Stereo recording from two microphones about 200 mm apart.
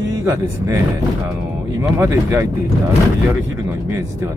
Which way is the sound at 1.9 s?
15° right (ahead or behind).